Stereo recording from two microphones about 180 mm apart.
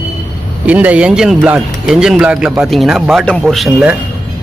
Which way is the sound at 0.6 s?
10° right (ahead or behind).